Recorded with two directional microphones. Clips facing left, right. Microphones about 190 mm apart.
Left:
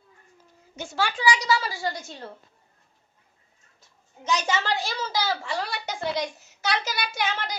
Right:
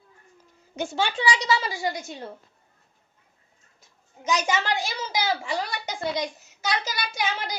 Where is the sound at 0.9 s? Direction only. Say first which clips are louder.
Left 1 dB; 25° right (ahead or behind).